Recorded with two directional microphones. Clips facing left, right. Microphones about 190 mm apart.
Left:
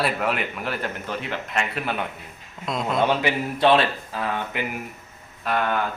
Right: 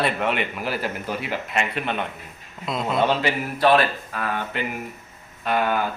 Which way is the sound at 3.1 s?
15° left (ahead or behind).